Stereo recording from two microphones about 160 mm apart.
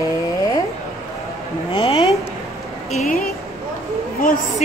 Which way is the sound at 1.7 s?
35° left (ahead or behind).